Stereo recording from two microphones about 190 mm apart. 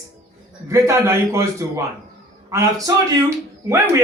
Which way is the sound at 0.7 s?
15° right (ahead or behind).